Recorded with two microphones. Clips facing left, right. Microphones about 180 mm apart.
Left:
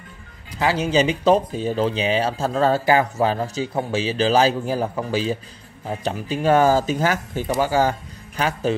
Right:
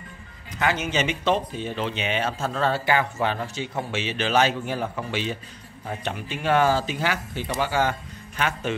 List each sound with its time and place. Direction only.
0.6 s speech: 35° left (ahead or behind)